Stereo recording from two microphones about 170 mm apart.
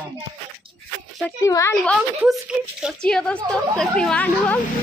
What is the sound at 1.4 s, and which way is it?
Speech, 20° left (ahead or behind).